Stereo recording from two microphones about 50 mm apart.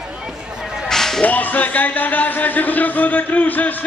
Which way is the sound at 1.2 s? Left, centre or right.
Left.